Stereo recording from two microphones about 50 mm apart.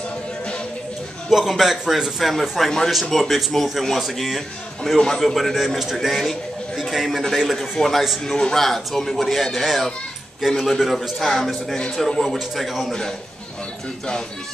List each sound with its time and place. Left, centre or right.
1.3 s speech: centre
4.8 s a man's voice: centre
5.2 s speech: centre